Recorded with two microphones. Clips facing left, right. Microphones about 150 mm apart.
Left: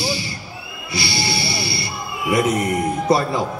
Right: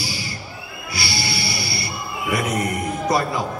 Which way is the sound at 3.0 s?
25° left (ahead or behind).